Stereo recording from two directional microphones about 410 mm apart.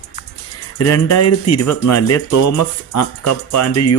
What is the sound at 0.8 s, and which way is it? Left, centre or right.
Speech, left.